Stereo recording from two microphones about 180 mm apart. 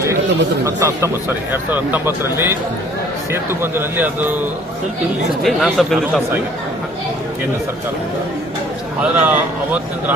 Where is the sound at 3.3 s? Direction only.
15° right (ahead or behind).